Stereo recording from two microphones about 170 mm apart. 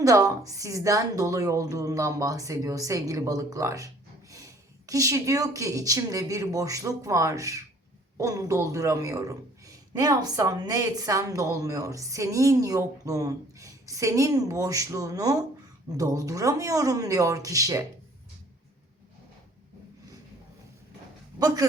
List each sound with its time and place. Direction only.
0.0 s a woman's voice: 20° right (ahead or behind)
21.3 s speech: 20° right (ahead or behind)